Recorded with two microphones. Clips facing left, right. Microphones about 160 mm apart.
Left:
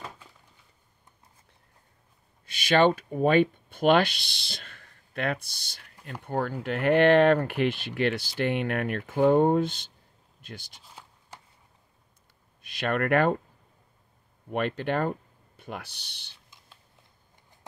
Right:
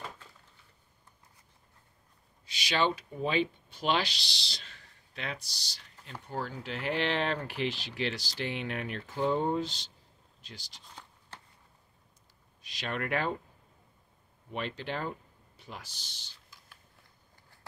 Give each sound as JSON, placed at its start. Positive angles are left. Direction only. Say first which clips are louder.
{"t": 2.4, "sound": "speech", "louder": "left 8 dB", "side_deg": 50}
{"t": 10.8, "sound": "a sound", "louder": "left 1 dB", "side_deg": 10}
{"t": 12.6, "sound": "speech", "louder": "left 9 dB", "side_deg": 55}
{"t": 14.5, "sound": "speech", "louder": "left 8 dB", "side_deg": 55}